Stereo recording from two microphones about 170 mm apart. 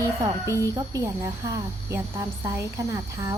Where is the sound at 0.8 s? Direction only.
20° right (ahead or behind).